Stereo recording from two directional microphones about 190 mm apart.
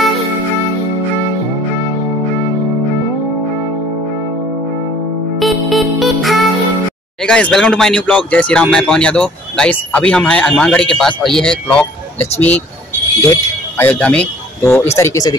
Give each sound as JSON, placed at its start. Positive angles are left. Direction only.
{"t": 5.4, "sound": "music", "side_deg": 0}
{"t": 7.2, "sound": "speech", "side_deg": 5}